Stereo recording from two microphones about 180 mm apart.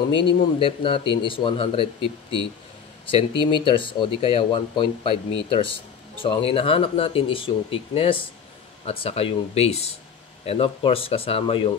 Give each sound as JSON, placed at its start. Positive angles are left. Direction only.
{"t": 0.1, "sound": "a man's voice", "side_deg": 80}
{"t": 0.6, "sound": "speech", "side_deg": 30}